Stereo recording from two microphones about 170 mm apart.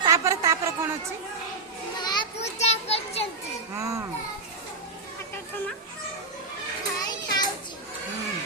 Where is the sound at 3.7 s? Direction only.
15° right (ahead or behind).